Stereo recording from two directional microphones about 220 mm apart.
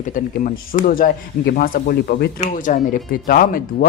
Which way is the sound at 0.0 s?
35° left (ahead or behind).